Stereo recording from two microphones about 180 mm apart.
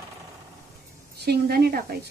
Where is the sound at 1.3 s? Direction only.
60° right (ahead or behind).